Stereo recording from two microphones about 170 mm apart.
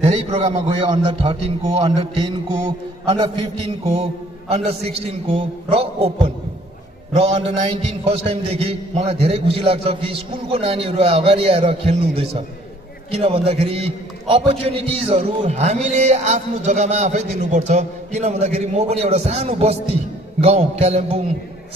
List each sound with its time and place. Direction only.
0.0 s a man's voice: 35° right (ahead or behind)
4.5 s a man's voice: 35° right (ahead or behind)